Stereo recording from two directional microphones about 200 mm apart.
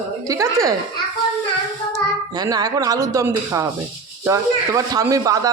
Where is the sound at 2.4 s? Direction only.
20° right (ahead or behind).